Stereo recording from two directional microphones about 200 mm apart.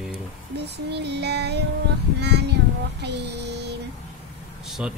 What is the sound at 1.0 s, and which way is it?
Child singing, 55° right (ahead or behind).